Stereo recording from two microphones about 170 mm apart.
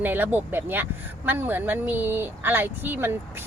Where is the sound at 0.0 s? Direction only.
10° right (ahead or behind).